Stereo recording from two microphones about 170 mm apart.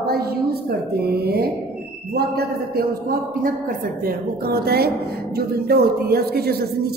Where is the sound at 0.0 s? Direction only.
65° right (ahead or behind).